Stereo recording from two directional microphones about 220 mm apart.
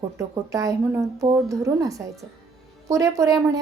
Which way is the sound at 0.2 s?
15° right (ahead or behind).